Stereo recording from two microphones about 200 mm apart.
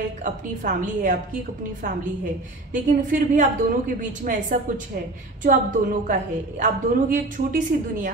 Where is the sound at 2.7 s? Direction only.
40° right (ahead or behind).